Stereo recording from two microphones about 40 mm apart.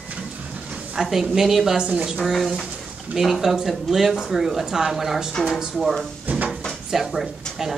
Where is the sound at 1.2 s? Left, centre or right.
Centre.